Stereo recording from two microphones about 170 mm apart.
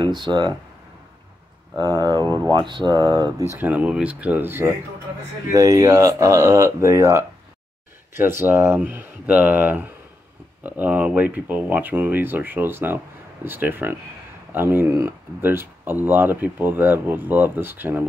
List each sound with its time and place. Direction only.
0.0 s speech: 25° right (ahead or behind)
1.8 s speech: 25° right (ahead or behind)
2.1 s speech: 15° left (ahead or behind)
2.5 s speech: 25° right (ahead or behind)
3.5 s speech: 10° right (ahead or behind)